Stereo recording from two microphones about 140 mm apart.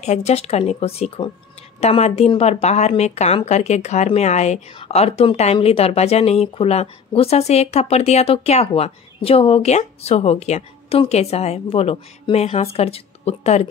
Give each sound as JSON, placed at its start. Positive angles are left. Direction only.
{"t": 0.0, "sound": "speech", "side_deg": 50}